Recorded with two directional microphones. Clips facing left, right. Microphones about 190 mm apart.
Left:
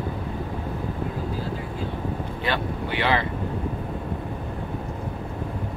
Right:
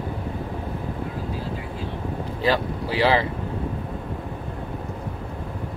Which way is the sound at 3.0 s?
30° right (ahead or behind).